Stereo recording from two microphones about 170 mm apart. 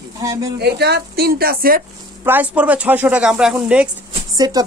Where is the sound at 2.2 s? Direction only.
10° right (ahead or behind).